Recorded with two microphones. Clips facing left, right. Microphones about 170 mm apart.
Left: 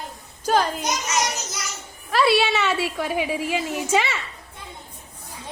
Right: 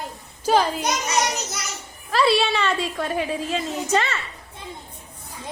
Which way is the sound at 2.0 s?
Centre (ahead or behind).